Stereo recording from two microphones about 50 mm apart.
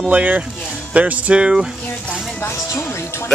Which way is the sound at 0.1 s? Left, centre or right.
Right.